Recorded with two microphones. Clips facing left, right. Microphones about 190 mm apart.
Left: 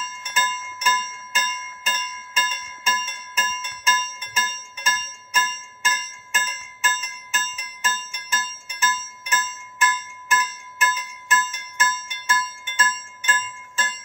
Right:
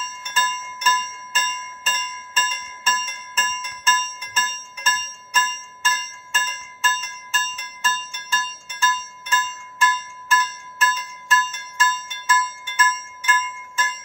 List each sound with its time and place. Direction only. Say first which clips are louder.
0.3 s clock: right 1 dB; 15° left (ahead or behind); by 13.9 s 30° left (ahead or behind)